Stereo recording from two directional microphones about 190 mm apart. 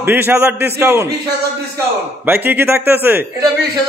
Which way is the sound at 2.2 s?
10° right (ahead or behind).